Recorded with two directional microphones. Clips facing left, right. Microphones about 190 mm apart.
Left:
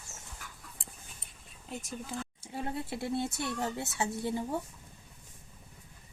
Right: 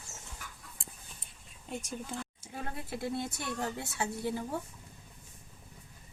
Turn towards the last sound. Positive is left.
turn(degrees=20)  # may be behind; listen again after turning